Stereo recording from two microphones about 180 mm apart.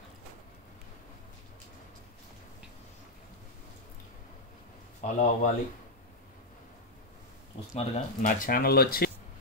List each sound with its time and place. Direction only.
5.0 s speech: 45° left (ahead or behind)
7.7 s speech: 40° left (ahead or behind); by 9.1 s 55° left (ahead or behind)